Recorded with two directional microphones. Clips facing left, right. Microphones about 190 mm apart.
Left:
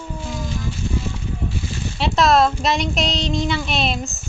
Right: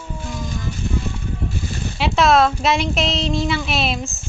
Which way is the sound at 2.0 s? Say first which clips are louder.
Right 1 dB; centre (ahead or behind).